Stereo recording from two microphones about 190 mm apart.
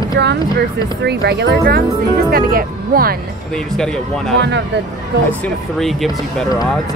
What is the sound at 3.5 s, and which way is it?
Speech, 5° left (ahead or behind).